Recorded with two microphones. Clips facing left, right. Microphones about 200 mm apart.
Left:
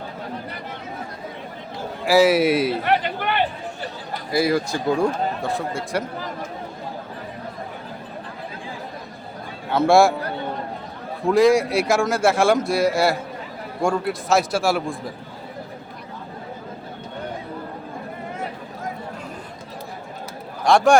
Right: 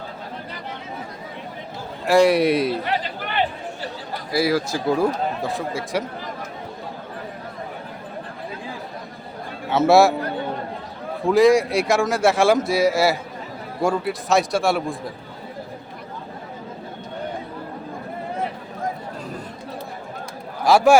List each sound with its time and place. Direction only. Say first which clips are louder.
2.0 s a man's voice: even; 5° left (ahead or behind)
2.8 s a sound: left 4 dB; 60° left (ahead or behind)
4.3 s a man's voice: even; centre (ahead or behind)
9.6 s a man's voice: right 1 dB; 5° right (ahead or behind)
11.3 s a man's voice: right 1 dB; centre (ahead or behind)
20.7 s a man's voice: right 1 dB; 5° right (ahead or behind)